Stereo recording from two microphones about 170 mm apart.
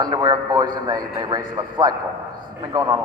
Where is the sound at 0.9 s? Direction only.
25° right (ahead or behind).